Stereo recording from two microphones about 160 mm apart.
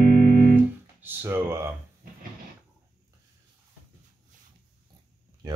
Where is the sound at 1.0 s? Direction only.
10° right (ahead or behind).